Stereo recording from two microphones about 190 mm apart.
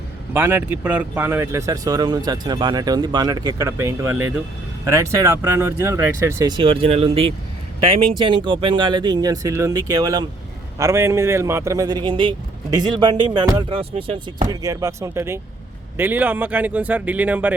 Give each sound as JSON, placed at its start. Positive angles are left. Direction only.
{"t": 0.3, "sound": "speech", "side_deg": -10}